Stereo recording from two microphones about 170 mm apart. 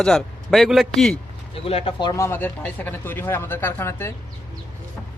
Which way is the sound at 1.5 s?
35° left (ahead or behind).